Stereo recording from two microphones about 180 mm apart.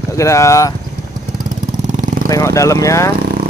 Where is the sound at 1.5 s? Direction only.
45° right (ahead or behind).